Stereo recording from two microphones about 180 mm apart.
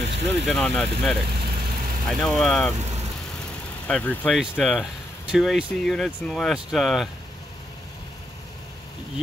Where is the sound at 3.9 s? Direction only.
5° left (ahead or behind).